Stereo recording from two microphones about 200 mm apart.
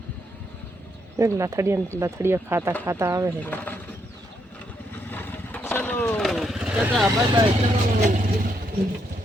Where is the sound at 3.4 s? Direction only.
10° left (ahead or behind).